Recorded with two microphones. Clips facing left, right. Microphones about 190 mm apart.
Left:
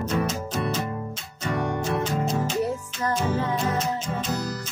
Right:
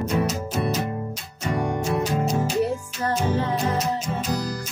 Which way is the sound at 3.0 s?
30° right (ahead or behind).